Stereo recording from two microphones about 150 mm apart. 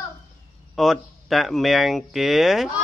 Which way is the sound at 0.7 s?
Centre (ahead or behind).